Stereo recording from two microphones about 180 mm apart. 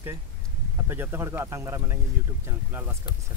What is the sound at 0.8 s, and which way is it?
Speech, 10° right (ahead or behind).